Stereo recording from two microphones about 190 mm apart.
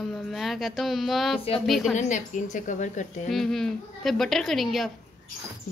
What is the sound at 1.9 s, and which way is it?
A woman's voice, 40° left (ahead or behind).